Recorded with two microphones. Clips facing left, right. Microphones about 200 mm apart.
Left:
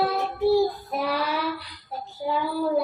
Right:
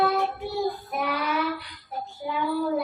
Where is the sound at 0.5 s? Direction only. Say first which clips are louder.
Left 4 dB; 30° left (ahead or behind).